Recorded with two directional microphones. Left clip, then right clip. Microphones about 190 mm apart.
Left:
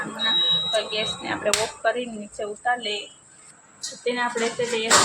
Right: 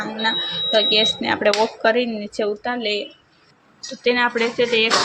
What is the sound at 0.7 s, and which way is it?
Speech, 35° right (ahead or behind).